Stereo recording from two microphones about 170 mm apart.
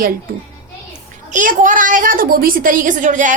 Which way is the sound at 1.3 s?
50° right (ahead or behind).